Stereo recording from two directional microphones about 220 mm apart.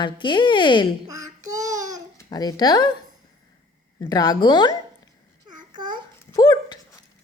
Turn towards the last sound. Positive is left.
turn(degrees=15)  # may be behind; listen again after turning